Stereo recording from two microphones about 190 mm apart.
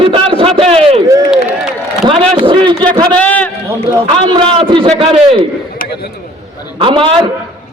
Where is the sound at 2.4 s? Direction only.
25° right (ahead or behind).